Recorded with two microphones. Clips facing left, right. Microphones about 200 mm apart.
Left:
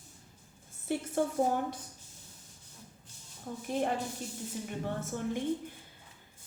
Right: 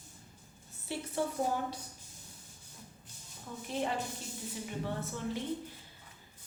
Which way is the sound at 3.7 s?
50° left (ahead or behind).